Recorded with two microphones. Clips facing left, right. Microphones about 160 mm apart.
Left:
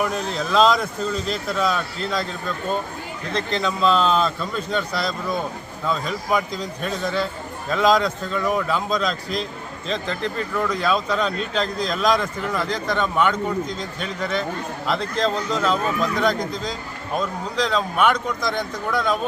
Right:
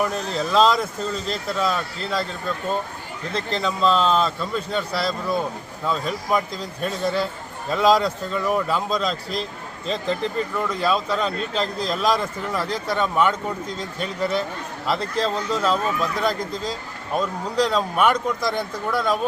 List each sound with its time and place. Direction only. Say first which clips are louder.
0.0 s a man's voice: even; centre (ahead or behind)
3.3 s a man's voice: left 1 dB; centre (ahead or behind)